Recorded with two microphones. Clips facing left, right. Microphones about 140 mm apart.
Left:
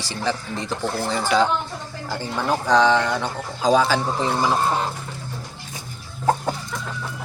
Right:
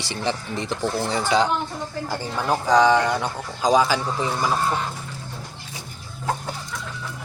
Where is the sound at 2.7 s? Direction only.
10° right (ahead or behind).